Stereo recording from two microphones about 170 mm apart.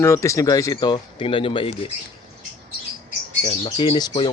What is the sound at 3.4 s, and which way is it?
Speech, 30° left (ahead or behind).